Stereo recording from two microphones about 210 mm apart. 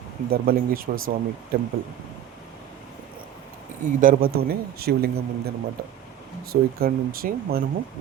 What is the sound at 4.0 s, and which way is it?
Speech, 40° right (ahead or behind).